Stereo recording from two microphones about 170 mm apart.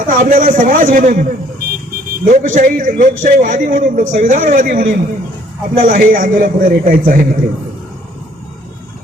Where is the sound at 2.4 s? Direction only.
50° right (ahead or behind).